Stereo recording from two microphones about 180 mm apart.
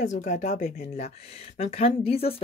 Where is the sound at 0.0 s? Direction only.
45° left (ahead or behind).